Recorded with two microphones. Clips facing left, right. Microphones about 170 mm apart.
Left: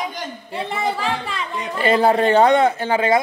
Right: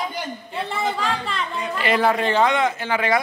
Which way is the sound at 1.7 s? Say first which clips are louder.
Left 4 dB; 30° left (ahead or behind).